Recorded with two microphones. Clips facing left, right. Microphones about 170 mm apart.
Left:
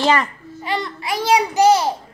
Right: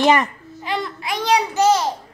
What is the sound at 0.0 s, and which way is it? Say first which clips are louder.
Speech: right 2 dB; 15° right (ahead or behind).